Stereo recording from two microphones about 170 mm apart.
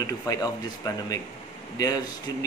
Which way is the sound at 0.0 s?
20° left (ahead or behind).